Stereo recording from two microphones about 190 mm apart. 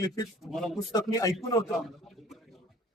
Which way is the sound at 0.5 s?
Centre (ahead or behind).